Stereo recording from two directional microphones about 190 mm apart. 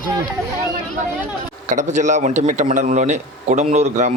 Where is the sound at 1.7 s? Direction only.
40° right (ahead or behind).